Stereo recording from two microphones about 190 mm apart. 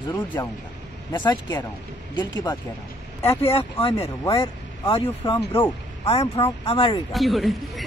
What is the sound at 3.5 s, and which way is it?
Speech, 30° left (ahead or behind).